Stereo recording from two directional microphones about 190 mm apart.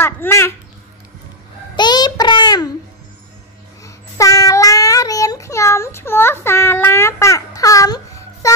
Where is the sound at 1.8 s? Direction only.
20° left (ahead or behind).